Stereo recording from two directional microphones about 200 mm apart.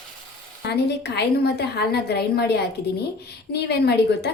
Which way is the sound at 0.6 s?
55° left (ahead or behind).